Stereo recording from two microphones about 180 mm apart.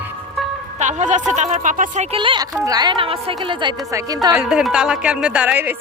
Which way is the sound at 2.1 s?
30° right (ahead or behind).